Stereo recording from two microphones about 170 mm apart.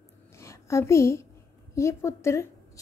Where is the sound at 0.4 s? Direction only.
15° left (ahead or behind).